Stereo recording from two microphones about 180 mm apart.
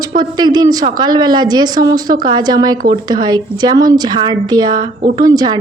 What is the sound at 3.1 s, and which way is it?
A woman's voice, 25° right (ahead or behind).